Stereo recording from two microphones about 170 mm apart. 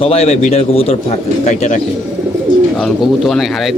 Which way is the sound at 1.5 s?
45° left (ahead or behind).